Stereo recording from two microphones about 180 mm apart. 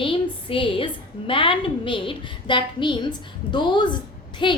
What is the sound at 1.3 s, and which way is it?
A woman's voice, 30° left (ahead or behind).